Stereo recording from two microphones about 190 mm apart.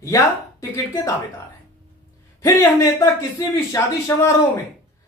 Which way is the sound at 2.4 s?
15° left (ahead or behind).